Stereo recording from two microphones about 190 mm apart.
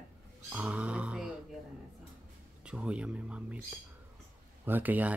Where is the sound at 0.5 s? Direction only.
5° right (ahead or behind).